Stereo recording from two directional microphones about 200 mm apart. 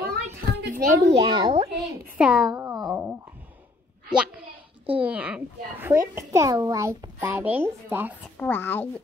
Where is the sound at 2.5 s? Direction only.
15° right (ahead or behind).